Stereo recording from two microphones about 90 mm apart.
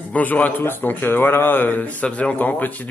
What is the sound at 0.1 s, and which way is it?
Speech, 20° left (ahead or behind).